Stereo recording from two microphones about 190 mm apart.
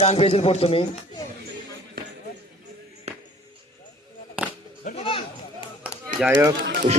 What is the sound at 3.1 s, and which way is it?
Music, 35° right (ahead or behind).